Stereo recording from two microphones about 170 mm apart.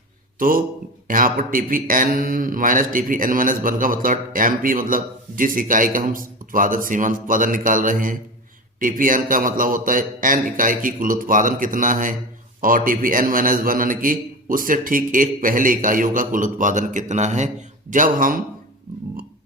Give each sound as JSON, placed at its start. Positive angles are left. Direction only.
{"t": 0.3, "sound": "a man's voice", "side_deg": -55}